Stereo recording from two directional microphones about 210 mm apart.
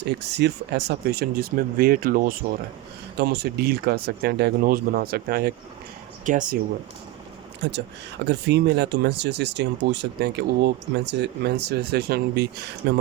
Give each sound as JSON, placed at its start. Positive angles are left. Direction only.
{"t": 0.0, "sound": "speech", "side_deg": -55}
{"t": 7.6, "sound": "speech", "side_deg": -55}